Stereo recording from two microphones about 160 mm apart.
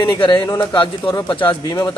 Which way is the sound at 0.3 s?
30° left (ahead or behind).